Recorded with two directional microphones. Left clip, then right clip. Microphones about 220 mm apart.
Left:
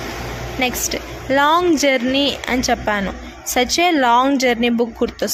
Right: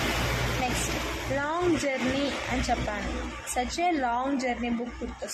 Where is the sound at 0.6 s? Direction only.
35° left (ahead or behind).